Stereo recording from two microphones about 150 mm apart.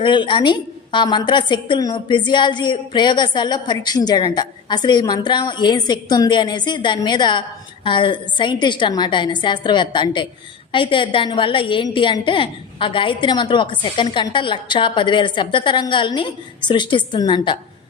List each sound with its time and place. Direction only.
0.0 s a woman's voice: 30° left (ahead or behind)